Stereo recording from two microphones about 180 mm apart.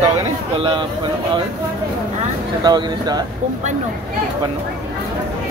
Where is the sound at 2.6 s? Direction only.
25° right (ahead or behind).